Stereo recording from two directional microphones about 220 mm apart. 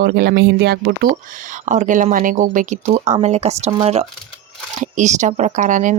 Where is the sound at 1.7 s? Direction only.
35° right (ahead or behind).